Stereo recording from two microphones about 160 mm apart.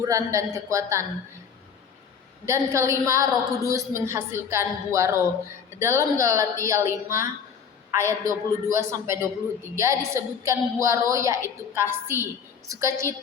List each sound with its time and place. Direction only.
0.0 s a woman's voice: 20° right (ahead or behind)
2.5 s a woman's voice: 20° right (ahead or behind)